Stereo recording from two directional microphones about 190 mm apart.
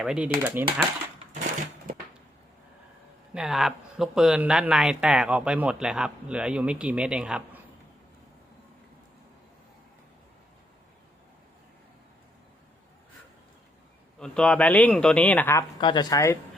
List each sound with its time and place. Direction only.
0.0 s speech: 5° right (ahead or behind)
3.3 s speech: centre (ahead or behind)
14.2 s a man's voice: 5° left (ahead or behind)
15.8 s speech: 25° left (ahead or behind)